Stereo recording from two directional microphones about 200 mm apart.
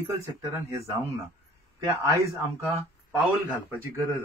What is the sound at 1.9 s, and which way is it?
Speech, 10° right (ahead or behind).